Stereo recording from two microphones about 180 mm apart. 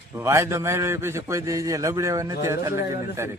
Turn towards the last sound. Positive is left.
turn(degrees=-15)  # may be behind; listen again after turning